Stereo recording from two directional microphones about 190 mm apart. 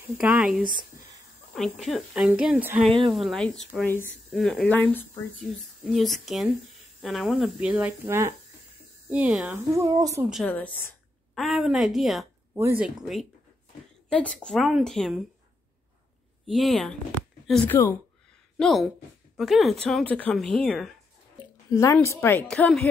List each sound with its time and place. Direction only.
0.2 s speech: 5° right (ahead or behind)
0.7 s a sound: 25° right (ahead or behind)
1.5 s speech: centre (ahead or behind)
9.8 s a woman's voice: 20° right (ahead or behind)
10.3 s a woman's voice: 5° left (ahead or behind)
16.4 s speech: centre (ahead or behind)
21.6 s a woman's voice: 15° left (ahead or behind)